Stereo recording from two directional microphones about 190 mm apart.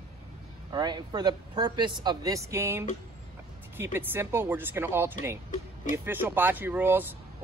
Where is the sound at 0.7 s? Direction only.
20° right (ahead or behind).